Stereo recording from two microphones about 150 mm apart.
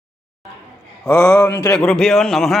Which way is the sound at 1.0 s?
15° left (ahead or behind).